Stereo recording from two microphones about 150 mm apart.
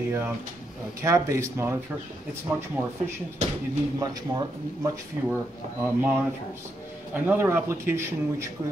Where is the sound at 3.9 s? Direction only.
25° right (ahead or behind).